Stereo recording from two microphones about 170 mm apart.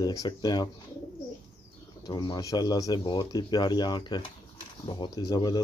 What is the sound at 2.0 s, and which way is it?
Speech, 25° left (ahead or behind).